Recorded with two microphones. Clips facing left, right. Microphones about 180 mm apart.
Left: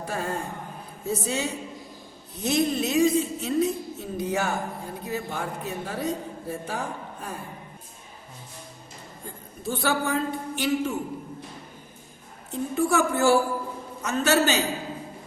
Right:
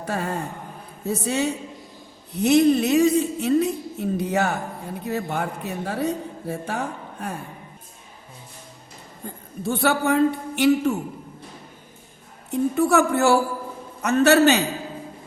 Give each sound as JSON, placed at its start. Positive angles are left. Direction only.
{"t": 0.0, "sound": "a woman's voice", "side_deg": -65}
{"t": 9.6, "sound": "a woman's voice", "side_deg": -65}
{"t": 12.5, "sound": "a woman's voice", "side_deg": -65}